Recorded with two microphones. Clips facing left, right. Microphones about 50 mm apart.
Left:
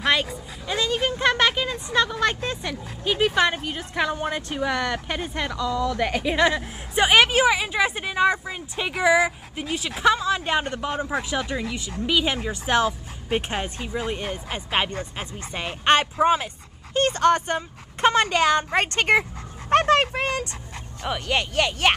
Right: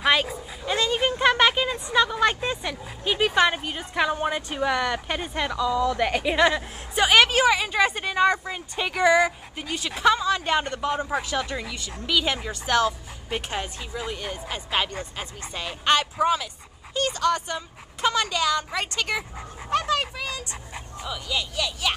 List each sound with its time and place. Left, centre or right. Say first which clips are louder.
0.0 s speech: right 1 dB; centre
7.0 s a woman's voice: left 1 dB; centre; by 19.2 s left
19.7 s dog: left 6 dB; left
21.0 s speech: left 5 dB; left